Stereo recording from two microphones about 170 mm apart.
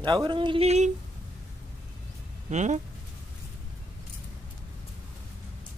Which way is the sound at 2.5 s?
45° right (ahead or behind).